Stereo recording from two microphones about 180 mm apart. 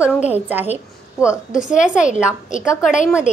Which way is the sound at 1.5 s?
45° left (ahead or behind).